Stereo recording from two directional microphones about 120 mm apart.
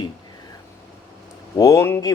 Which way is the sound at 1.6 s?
25° left (ahead or behind).